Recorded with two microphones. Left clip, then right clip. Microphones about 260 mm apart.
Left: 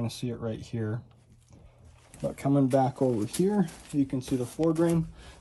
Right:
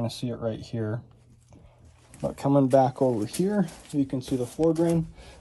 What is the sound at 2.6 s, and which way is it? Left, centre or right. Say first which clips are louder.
Speech: right 5 dB; centre.